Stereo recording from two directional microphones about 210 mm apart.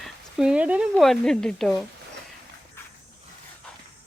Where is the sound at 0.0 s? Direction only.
5° right (ahead or behind).